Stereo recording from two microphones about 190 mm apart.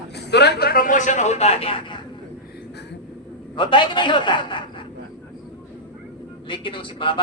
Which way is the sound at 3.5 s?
25° left (ahead or behind).